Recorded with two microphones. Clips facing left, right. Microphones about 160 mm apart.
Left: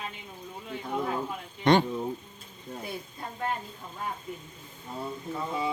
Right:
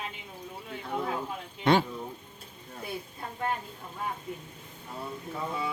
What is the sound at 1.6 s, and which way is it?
Speech, 5° right (ahead or behind).